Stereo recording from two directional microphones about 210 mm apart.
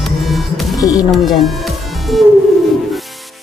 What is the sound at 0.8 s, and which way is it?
Music, 15° left (ahead or behind).